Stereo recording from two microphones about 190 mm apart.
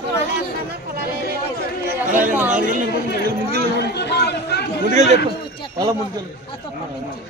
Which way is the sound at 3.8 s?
60° left (ahead or behind).